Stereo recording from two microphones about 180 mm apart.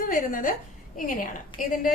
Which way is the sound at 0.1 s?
50° left (ahead or behind).